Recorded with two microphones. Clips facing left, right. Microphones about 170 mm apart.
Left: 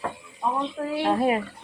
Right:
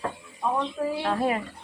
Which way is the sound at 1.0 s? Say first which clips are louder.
Left 5 dB; 20° left (ahead or behind).